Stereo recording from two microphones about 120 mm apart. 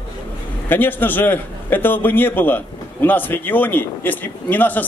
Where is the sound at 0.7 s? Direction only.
15° left (ahead or behind).